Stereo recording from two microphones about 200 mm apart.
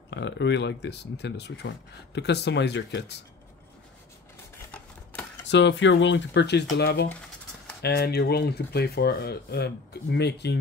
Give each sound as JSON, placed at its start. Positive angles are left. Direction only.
{"t": 0.1, "sound": "speech", "side_deg": 60}
{"t": 5.5, "sound": "speech", "side_deg": 60}